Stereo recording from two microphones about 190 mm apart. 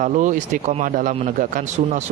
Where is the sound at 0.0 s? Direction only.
40° right (ahead or behind).